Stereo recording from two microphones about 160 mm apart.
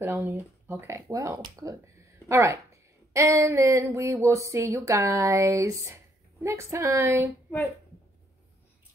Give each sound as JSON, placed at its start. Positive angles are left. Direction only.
{"t": 0.0, "sound": "a woman's voice", "side_deg": -15}